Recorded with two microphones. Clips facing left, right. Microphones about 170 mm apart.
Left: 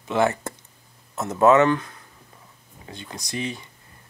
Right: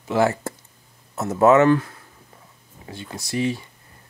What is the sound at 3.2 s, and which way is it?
Speech, 20° left (ahead or behind).